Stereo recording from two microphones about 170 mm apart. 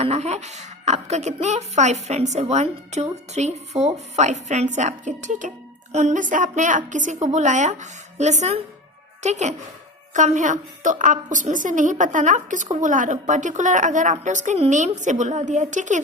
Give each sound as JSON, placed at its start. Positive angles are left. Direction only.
{"t": 0.0, "sound": "a woman's voice", "side_deg": -40}